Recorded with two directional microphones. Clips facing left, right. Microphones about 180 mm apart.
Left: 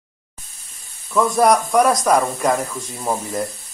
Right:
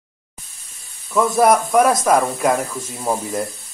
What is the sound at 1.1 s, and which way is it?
Speech, centre (ahead or behind).